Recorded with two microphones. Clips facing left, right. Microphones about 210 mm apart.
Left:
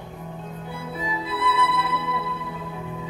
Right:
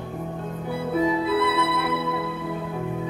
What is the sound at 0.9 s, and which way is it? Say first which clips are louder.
Music: right 10 dB; 60° right (ahead or behind).